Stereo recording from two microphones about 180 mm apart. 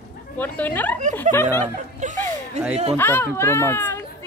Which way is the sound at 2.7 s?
35° right (ahead or behind).